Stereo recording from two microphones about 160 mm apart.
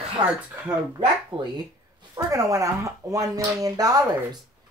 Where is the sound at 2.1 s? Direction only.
20° right (ahead or behind).